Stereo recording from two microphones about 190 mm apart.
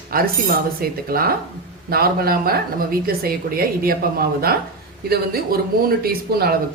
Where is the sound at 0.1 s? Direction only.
50° right (ahead or behind).